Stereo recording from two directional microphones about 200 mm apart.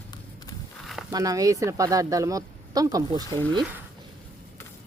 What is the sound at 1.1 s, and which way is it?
Speech, 15° right (ahead or behind).